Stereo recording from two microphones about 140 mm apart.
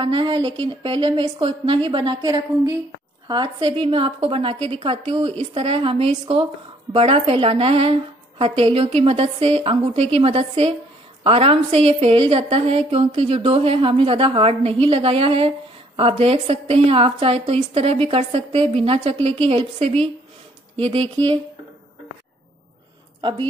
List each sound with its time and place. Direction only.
0.0 s a woman's voice: 35° right (ahead or behind)